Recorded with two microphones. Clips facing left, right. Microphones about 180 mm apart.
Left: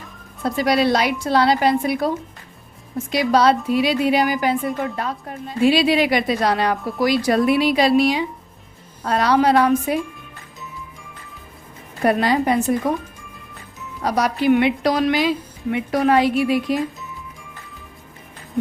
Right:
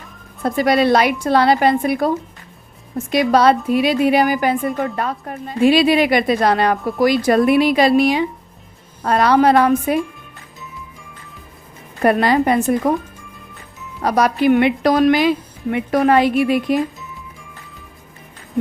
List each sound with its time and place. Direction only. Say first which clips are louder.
0.4 s a woman's voice: right 3 dB; 55° right (ahead or behind)
3.1 s a woman's voice: right 3 dB; 55° right (ahead or behind)
12.0 s a woman's voice: right 3 dB; 60° right (ahead or behind)
14.0 s a woman's voice: right 4 dB; 60° right (ahead or behind)